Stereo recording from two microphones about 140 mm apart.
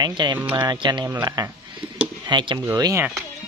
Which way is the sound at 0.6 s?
35° right (ahead or behind).